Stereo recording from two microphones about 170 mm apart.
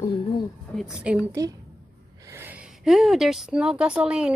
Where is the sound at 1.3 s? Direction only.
20° right (ahead or behind).